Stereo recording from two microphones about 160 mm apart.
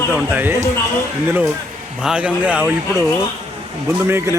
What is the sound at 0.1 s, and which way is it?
Speech, 15° right (ahead or behind).